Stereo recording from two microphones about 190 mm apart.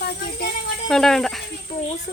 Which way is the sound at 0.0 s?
60° left (ahead or behind).